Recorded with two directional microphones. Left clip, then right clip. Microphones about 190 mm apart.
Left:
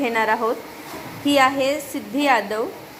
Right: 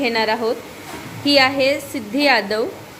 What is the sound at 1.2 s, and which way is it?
A woman's voice, 15° right (ahead or behind).